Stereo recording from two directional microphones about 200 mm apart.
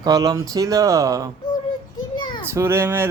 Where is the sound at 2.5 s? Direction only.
15° right (ahead or behind).